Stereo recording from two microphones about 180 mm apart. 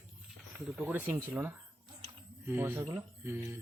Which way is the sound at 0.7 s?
5° right (ahead or behind).